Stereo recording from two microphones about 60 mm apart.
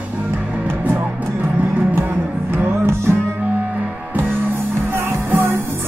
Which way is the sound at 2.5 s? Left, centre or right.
Right.